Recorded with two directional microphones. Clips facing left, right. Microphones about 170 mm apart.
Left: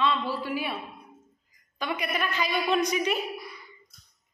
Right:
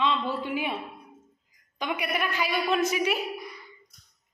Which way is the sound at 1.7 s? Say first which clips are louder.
Right 1 dB; 15° right (ahead or behind).